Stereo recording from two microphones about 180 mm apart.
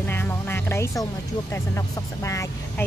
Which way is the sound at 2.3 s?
15° left (ahead or behind).